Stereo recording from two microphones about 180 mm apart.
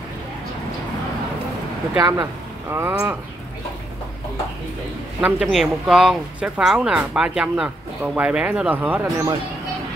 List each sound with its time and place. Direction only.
2.0 s speech: 20° right (ahead or behind)
5.2 s speech: 5° right (ahead or behind)